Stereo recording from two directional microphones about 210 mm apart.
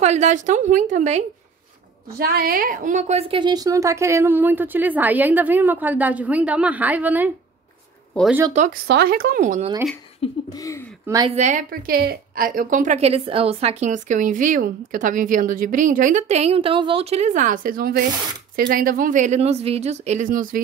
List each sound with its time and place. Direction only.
0.0 s a woman's voice: 35° right (ahead or behind)
2.1 s a woman's voice: 45° right (ahead or behind); by 7.3 s 10° right (ahead or behind)
8.8 s speech: 50° right (ahead or behind)
10.2 s a sound: 15° left (ahead or behind)
11.1 s a woman's voice: 20° right (ahead or behind)
11.3 s a woman's voice: 35° right (ahead or behind)